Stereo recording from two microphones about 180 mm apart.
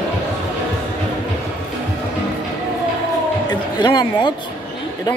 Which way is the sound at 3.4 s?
25° left (ahead or behind).